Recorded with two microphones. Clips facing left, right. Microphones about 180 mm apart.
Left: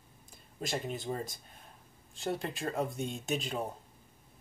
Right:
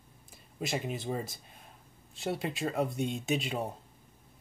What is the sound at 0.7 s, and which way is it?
Speech, 5° right (ahead or behind).